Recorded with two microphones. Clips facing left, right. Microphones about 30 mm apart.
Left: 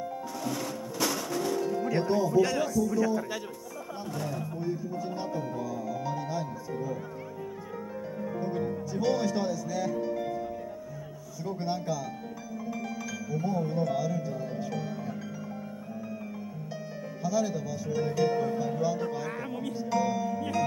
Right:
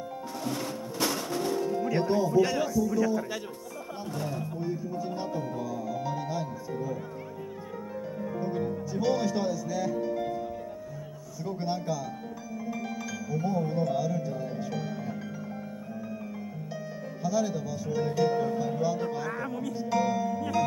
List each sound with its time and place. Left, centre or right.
0.4 s music: centre
1.8 s music: centre
2.4 s speech: centre
4.4 s speech: centre
8.2 s music: centre
11.5 s speech: centre
12.6 s music: centre
17.2 s speech: centre
19.2 s speech: centre
19.8 s speech: centre